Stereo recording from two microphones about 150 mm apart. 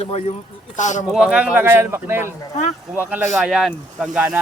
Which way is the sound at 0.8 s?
55° left (ahead or behind).